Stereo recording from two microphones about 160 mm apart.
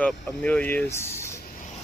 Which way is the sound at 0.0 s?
10° left (ahead or behind).